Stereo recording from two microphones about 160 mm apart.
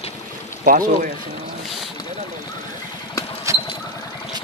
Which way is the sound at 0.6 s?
60° right (ahead or behind).